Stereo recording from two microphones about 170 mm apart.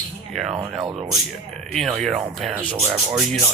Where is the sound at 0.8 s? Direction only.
25° right (ahead or behind).